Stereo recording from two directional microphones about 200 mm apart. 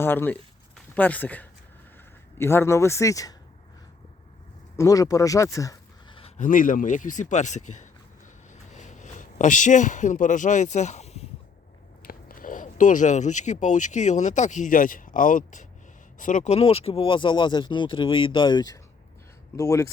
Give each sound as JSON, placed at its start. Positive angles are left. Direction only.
{"t": 0.0, "sound": "speech", "side_deg": 10}
{"t": 4.8, "sound": "speech", "side_deg": 15}
{"t": 8.7, "sound": "speech", "side_deg": 40}
{"t": 12.0, "sound": "speech", "side_deg": 45}